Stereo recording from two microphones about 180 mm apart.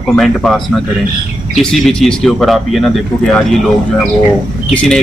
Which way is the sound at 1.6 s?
5° left (ahead or behind).